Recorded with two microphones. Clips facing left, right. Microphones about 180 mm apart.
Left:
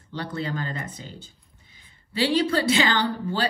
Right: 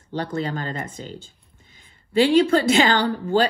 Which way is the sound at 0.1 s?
45° right (ahead or behind).